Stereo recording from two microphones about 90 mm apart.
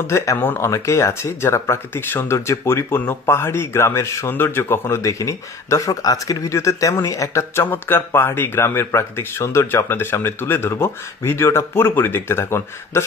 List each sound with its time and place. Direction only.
0.0 s speech: 35° left (ahead or behind)
0.4 s speech: 25° left (ahead or behind)
0.7 s speech: 35° left (ahead or behind)
7.7 s speech: 25° left (ahead or behind)